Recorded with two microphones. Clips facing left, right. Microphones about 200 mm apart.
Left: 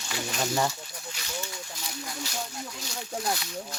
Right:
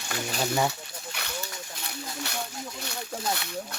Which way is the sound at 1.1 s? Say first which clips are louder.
Right 6 dB; 60° right (ahead or behind).